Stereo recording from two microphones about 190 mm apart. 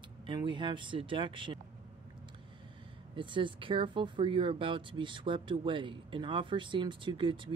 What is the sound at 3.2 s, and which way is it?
Speech, 25° right (ahead or behind).